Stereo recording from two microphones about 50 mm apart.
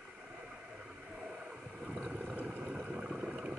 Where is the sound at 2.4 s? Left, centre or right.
Centre.